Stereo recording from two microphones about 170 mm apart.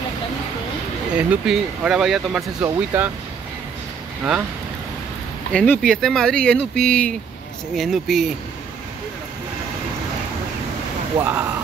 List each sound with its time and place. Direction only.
1.3 s speech: 5° right (ahead or behind)
2.6 s speech: 15° right (ahead or behind)
5.5 s speech: 5° left (ahead or behind)
11.1 s speech: 10° right (ahead or behind)